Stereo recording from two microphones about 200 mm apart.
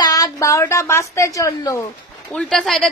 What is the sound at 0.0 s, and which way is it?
A woman's voice, 15° left (ahead or behind).